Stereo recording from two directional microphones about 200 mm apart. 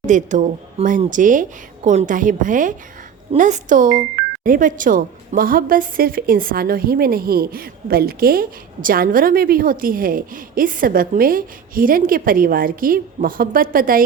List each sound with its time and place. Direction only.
0.0 s a woman's voice: 40° right (ahead or behind)